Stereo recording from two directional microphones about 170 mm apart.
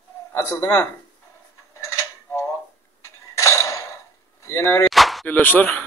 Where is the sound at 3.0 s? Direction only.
15° left (ahead or behind).